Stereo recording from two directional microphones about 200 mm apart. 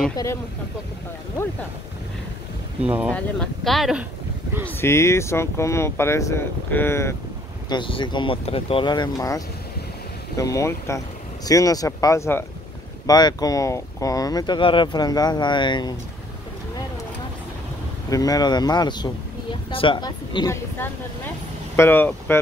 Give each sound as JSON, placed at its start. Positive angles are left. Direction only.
{"t": 0.1, "sound": "speech", "side_deg": 15}
{"t": 2.8, "sound": "speech", "side_deg": -5}
{"t": 3.1, "sound": "speech", "side_deg": 5}
{"t": 4.6, "sound": "speech", "side_deg": 10}
{"t": 7.7, "sound": "speech", "side_deg": 25}
{"t": 18.1, "sound": "speech", "side_deg": 15}
{"t": 21.7, "sound": "speech", "side_deg": 10}